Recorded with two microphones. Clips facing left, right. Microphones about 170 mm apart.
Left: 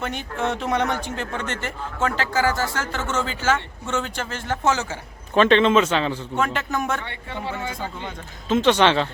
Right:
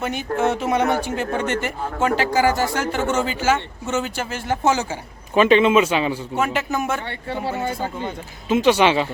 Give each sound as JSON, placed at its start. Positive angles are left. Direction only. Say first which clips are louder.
{"t": 0.0, "sound": "speech", "louder": "right 3 dB", "side_deg": -5}
{"t": 0.3, "sound": "speech", "louder": "right 6 dB", "side_deg": -45}
{"t": 0.5, "sound": "speech", "louder": "right 4 dB", "side_deg": -5}
{"t": 7.1, "sound": "speech", "louder": "right 5 dB", "side_deg": -35}
{"t": 7.6, "sound": "speech", "louder": "right 5 dB", "side_deg": -50}
{"t": 8.0, "sound": "speech", "louder": "right 4 dB", "side_deg": -10}